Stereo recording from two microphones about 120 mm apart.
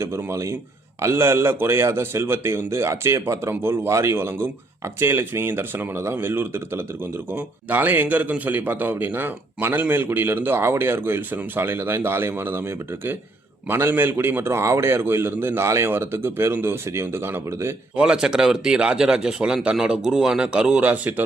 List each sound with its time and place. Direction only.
0.0 s a man's voice: 20° right (ahead or behind)
17.9 s speech: 10° right (ahead or behind)